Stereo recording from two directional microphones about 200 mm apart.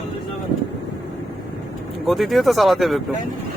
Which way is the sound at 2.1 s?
Centre (ahead or behind).